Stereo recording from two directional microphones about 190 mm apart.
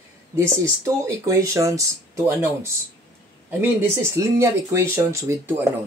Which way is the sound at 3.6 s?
15° right (ahead or behind).